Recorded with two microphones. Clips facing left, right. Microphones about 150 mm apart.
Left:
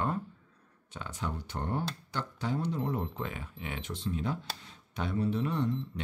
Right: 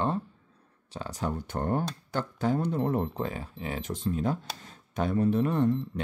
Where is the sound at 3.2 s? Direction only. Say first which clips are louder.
Right 5 dB; 35° right (ahead or behind).